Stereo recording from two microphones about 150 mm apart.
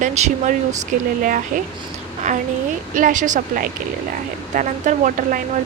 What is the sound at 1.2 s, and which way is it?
Speech, 65° right (ahead or behind).